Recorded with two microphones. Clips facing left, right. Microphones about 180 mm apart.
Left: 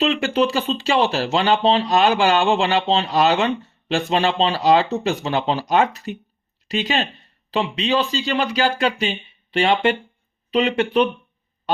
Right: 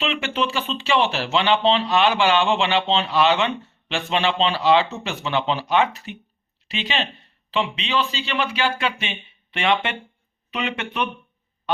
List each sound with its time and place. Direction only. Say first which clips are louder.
0.0 s speech: left 6 dB; 40° left (ahead or behind)